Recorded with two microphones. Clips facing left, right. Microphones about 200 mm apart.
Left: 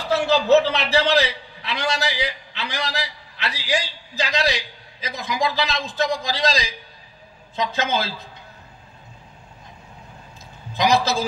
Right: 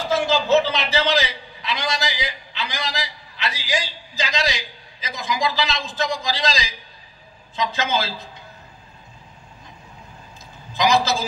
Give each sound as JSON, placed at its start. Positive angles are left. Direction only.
{"t": 0.1, "sound": "a man's voice", "side_deg": 65}
{"t": 10.7, "sound": "a man's voice", "side_deg": 55}